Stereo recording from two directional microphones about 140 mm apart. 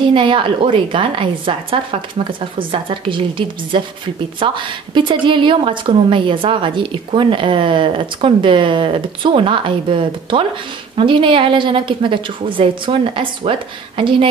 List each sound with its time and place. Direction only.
0.0 s a woman's voice: 35° right (ahead or behind)